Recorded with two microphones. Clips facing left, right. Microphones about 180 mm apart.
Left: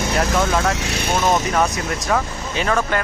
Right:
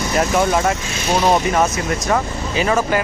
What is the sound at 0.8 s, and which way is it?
Speech, 70° left (ahead or behind).